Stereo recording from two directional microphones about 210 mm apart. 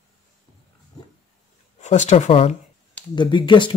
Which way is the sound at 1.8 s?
35° left (ahead or behind).